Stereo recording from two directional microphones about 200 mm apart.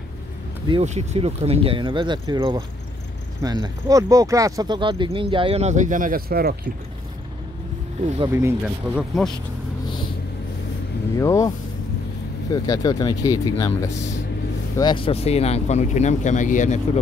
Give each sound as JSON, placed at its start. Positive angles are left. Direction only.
{"t": 0.7, "sound": "speech", "side_deg": -30}
{"t": 8.0, "sound": "speech", "side_deg": -35}
{"t": 8.3, "sound": "speech", "side_deg": -15}
{"t": 11.1, "sound": "speech", "side_deg": 15}
{"t": 12.5, "sound": "speech", "side_deg": 15}